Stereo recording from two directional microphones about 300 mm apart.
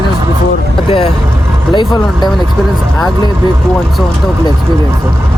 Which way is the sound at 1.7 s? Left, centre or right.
Centre.